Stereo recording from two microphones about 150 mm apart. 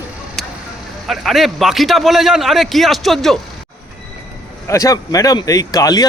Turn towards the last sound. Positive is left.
turn(degrees=25)  # may be behind; listen again after turning